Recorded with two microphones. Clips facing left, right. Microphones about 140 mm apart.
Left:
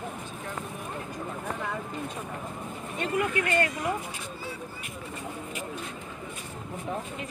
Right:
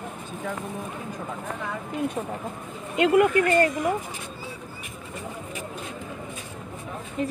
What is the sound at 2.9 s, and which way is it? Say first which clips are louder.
Speech: right 10 dB; 90° right.